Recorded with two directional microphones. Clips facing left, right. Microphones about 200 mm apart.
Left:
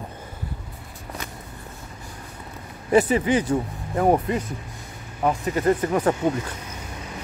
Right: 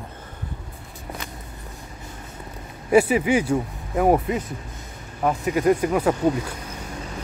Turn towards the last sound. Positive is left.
turn(degrees=-10)  # may be behind; listen again after turning